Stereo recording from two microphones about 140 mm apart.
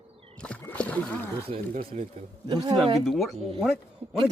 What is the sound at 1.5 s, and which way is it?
Speech, 55° right (ahead or behind).